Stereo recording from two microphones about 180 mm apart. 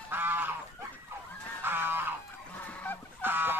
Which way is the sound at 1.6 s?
10° right (ahead or behind).